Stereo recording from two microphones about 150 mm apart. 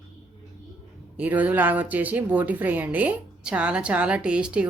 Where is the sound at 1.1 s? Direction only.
10° right (ahead or behind).